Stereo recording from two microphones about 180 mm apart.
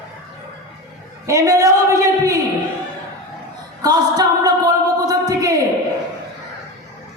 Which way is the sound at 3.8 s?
20° right (ahead or behind).